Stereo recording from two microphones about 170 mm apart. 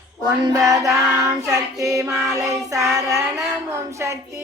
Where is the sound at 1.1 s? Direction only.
15° right (ahead or behind).